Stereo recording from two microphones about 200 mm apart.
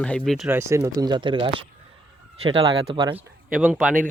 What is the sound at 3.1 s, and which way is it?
Speech, 10° right (ahead or behind).